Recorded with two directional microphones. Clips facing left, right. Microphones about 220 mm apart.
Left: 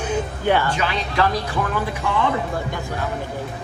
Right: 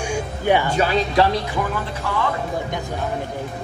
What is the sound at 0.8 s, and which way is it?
Speech, 40° right (ahead or behind).